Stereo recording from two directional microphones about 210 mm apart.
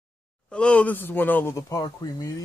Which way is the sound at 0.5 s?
5° left (ahead or behind).